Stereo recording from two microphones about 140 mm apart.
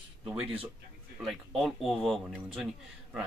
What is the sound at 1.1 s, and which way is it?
Speech, centre (ahead or behind).